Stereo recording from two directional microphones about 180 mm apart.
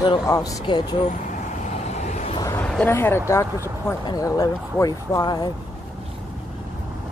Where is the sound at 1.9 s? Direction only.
40° left (ahead or behind).